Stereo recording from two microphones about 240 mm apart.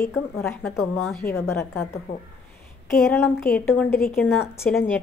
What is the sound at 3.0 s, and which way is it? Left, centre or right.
A woman's voice, centre.